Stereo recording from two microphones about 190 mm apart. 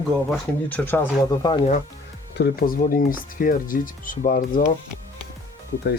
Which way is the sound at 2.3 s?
55° left (ahead or behind).